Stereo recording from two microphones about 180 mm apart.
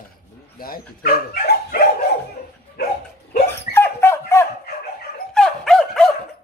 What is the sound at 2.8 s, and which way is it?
Dog, 60° left (ahead or behind).